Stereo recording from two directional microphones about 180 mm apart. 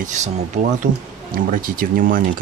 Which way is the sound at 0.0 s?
40° right (ahead or behind).